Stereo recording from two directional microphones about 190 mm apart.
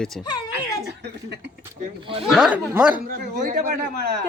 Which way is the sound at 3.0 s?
45° right (ahead or behind).